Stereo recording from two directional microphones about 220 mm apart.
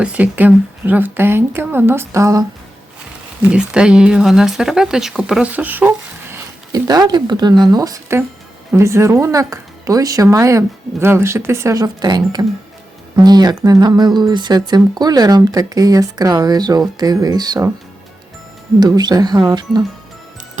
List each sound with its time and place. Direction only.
0.0 s speech: 5° right (ahead or behind)
3.4 s speech: 5° right (ahead or behind)
18.8 s speech: 20° right (ahead or behind)